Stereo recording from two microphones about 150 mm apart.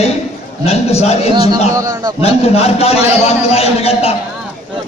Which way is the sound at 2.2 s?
45° left (ahead or behind).